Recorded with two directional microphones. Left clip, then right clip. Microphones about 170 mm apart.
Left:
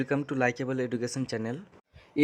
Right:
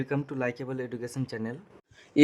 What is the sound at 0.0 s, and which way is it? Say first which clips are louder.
Speech: left 3 dB; 15° left (ahead or behind).